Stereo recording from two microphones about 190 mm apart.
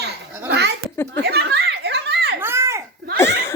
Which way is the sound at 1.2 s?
60° right (ahead or behind).